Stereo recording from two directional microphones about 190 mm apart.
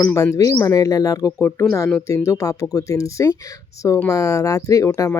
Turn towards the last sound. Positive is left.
turn(degrees=15)  # may be behind; listen again after turning